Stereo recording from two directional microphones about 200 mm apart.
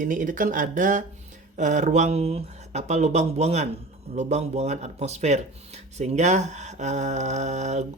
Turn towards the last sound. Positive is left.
turn(degrees=-35)  # may be behind; listen again after turning